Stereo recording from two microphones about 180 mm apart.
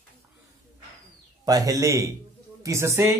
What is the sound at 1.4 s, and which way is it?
A man's voice, 20° right (ahead or behind).